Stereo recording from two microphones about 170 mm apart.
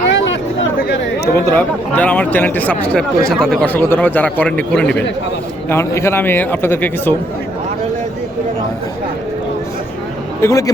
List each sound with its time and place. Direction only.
0.1 s chatter: 90° left
0.8 s chatter: 65° left (ahead or behind)
1.5 s speech: 10° left (ahead or behind)
10.4 s a man's voice: 20° left (ahead or behind)